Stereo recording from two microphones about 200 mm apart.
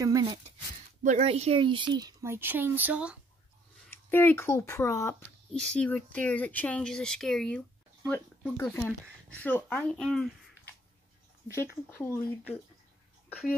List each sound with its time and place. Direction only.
0.0 s speech: 20° right (ahead or behind)
1.0 s speech: 35° right (ahead or behind); by 3.2 s 5° right (ahead or behind)
3.8 s speech: 10° left (ahead or behind)
11.9 s speech: 10° left (ahead or behind)